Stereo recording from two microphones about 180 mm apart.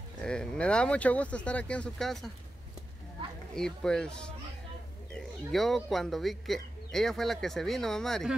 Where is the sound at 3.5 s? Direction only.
5° left (ahead or behind).